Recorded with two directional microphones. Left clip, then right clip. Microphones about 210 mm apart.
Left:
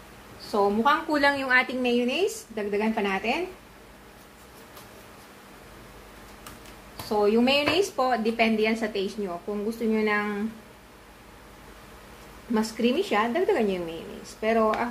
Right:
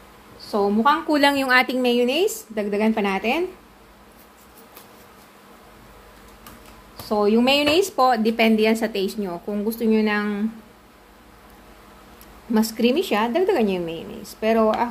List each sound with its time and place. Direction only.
0.5 s a woman's voice: 45° right (ahead or behind)
7.1 s speech: 45° right (ahead or behind)
12.5 s speech: 45° right (ahead or behind)